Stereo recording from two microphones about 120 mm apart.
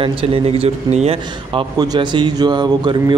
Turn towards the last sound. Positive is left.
turn(degrees=-40)  # may be behind; listen again after turning